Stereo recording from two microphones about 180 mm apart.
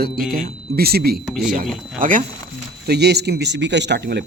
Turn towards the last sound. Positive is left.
turn(degrees=-70)  # may be behind; listen again after turning